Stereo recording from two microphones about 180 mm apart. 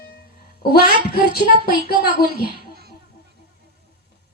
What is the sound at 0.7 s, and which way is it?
A child's voice, 55° left (ahead or behind).